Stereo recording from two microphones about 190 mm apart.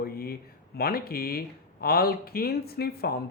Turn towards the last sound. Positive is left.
turn(degrees=55)  # may be behind; listen again after turning